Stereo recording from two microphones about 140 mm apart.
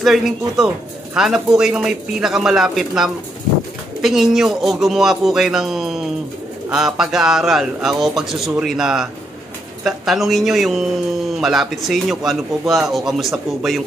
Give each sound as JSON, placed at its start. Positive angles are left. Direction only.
{"t": 0.0, "sound": "speech", "side_deg": 0}